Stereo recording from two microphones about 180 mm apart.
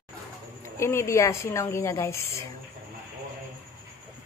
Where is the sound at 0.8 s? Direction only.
15° left (ahead or behind).